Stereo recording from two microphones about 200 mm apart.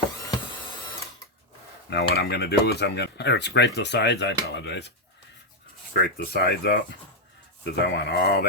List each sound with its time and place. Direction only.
1.9 s speech: 55° left (ahead or behind)
5.9 s speech: 50° left (ahead or behind)